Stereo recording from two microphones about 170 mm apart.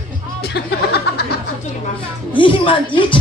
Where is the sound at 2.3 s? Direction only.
30° left (ahead or behind).